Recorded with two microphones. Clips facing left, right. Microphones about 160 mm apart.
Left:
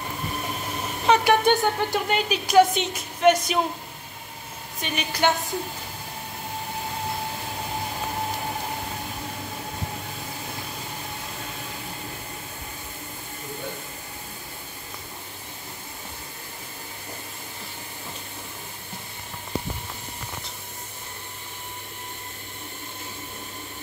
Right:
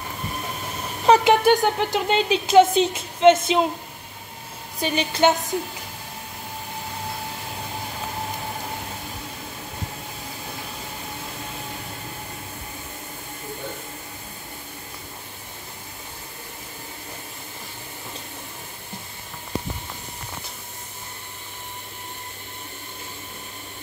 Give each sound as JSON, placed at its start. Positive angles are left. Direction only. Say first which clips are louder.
{"t": 1.1, "sound": "speech", "louder": "right 4 dB", "side_deg": -35}
{"t": 1.4, "sound": "speech", "louder": "right 3 dB", "side_deg": -15}
{"t": 4.7, "sound": "speech", "louder": "right 6 dB", "side_deg": -30}